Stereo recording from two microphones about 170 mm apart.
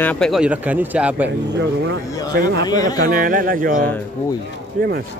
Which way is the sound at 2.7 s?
20° left (ahead or behind).